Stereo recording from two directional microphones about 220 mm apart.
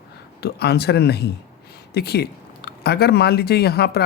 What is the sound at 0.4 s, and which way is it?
Speech, 45° left (ahead or behind).